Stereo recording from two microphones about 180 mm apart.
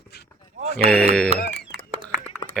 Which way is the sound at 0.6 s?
35° right (ahead or behind).